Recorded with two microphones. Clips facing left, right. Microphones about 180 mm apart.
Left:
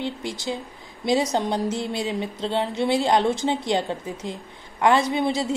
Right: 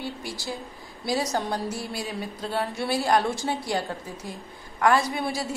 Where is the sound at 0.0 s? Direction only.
20° left (ahead or behind).